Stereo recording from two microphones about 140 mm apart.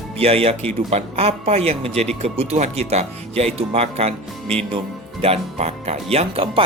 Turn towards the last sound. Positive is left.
turn(degrees=-45)  # may be behind; listen again after turning